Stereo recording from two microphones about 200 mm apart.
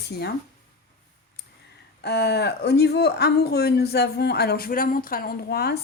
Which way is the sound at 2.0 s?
55° left (ahead or behind).